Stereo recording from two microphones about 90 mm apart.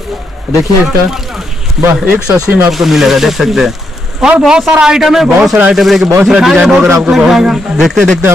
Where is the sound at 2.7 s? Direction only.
Centre (ahead or behind).